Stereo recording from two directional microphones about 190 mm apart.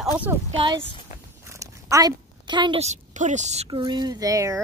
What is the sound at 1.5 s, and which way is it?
A woman's voice, 15° right (ahead or behind).